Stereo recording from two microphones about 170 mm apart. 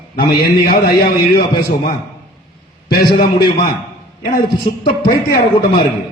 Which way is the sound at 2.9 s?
65° left (ahead or behind).